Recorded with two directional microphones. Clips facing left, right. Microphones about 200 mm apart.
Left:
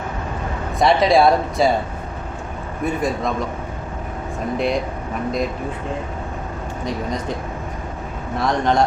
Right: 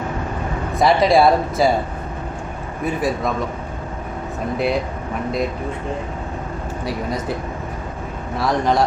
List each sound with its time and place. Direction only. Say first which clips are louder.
0.8 s speech: even; centre (ahead or behind)
2.8 s speech: even; 5° right (ahead or behind)
4.5 s speech: even; 5° right (ahead or behind)
6.8 s speech: even; 5° right (ahead or behind)
8.4 s speech: even; 5° right (ahead or behind)